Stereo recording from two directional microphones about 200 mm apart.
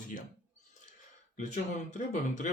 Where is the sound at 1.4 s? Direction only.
35° left (ahead or behind).